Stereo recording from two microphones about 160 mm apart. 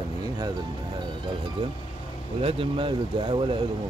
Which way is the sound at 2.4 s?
35° right (ahead or behind).